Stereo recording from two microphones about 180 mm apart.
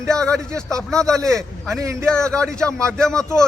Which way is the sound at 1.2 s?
15° right (ahead or behind).